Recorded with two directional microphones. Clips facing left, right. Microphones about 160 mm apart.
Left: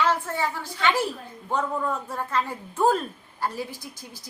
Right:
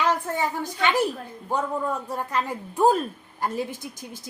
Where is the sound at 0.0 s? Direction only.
15° right (ahead or behind).